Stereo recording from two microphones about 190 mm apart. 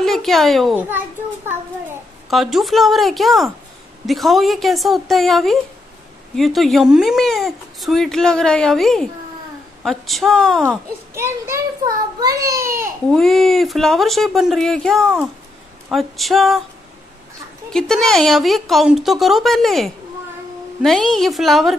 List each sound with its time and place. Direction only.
0.0 s a child's voice: centre (ahead or behind)
2.2 s speech: centre (ahead or behind)
11.1 s a child's voice: 15° right (ahead or behind)
13.1 s speech: centre (ahead or behind)
17.6 s speech: centre (ahead or behind)